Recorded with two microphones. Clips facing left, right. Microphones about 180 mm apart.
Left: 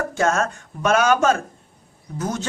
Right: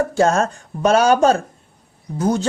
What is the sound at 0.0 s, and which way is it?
Speech, 35° right (ahead or behind).